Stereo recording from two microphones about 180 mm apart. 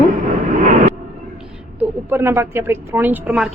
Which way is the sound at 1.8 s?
10° right (ahead or behind).